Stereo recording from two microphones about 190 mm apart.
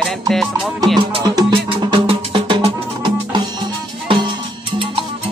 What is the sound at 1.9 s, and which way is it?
Music, 25° right (ahead or behind).